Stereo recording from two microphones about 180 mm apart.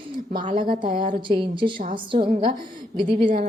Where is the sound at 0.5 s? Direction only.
50° right (ahead or behind).